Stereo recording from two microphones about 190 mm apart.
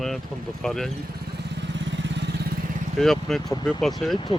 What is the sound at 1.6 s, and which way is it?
Vehicle, 70° right (ahead or behind).